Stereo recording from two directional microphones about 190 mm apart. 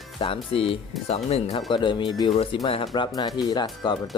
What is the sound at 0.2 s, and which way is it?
Speech, 25° left (ahead or behind).